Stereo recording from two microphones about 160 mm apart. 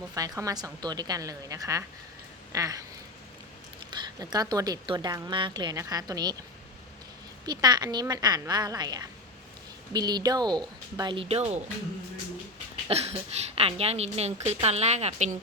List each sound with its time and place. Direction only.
0.1 s a woman's voice: 20° right (ahead or behind)
3.9 s a woman's voice: 25° right (ahead or behind)
7.4 s a woman's voice: 25° right (ahead or behind); by 11.6 s 40° right (ahead or behind)
12.9 s speech: 40° right (ahead or behind)